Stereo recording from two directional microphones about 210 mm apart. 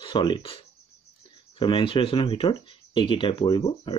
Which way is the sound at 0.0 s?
20° left (ahead or behind).